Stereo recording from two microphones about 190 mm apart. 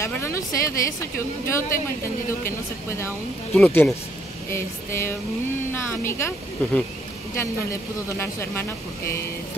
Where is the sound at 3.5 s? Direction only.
5° left (ahead or behind).